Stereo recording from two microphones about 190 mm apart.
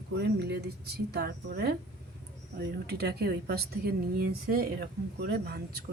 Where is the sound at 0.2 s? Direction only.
60° right (ahead or behind).